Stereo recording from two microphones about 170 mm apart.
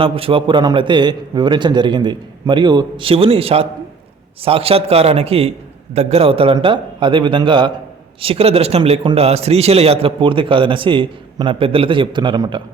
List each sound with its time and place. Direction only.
0.0 s a man's voice: 30° right (ahead or behind)